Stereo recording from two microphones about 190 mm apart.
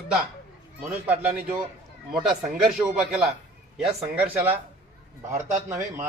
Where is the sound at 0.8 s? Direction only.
5° right (ahead or behind).